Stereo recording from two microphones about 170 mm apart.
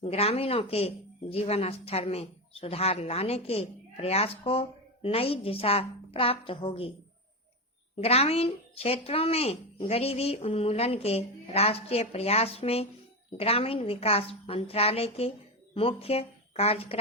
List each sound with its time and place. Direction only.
0.0 s speech: 35° left (ahead or behind)
7.9 s speech: 35° left (ahead or behind)